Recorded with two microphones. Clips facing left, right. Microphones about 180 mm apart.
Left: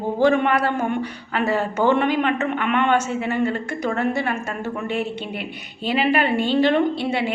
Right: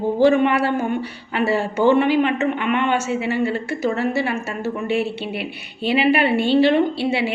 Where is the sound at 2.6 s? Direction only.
55° left (ahead or behind).